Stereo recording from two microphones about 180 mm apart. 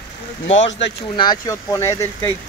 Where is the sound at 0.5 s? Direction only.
90° left.